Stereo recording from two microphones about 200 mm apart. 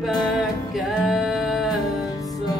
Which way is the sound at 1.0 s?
Centre (ahead or behind).